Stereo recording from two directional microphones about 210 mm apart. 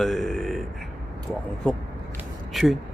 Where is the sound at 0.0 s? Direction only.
Centre (ahead or behind).